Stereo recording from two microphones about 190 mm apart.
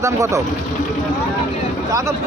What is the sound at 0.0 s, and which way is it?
Speech, 15° right (ahead or behind).